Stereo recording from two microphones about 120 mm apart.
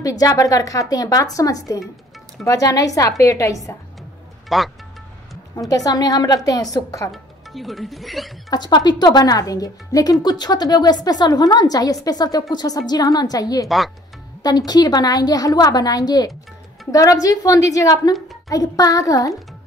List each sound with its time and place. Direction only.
0.0 s speech: 30° left (ahead or behind)
4.5 s speech: centre (ahead or behind)
5.7 s a woman's voice: 30° left (ahead or behind)
7.1 s speech: centre (ahead or behind)
8.5 s a woman's voice: 35° left (ahead or behind)
13.7 s speech: centre (ahead or behind)
14.4 s a woman's voice: 35° left (ahead or behind)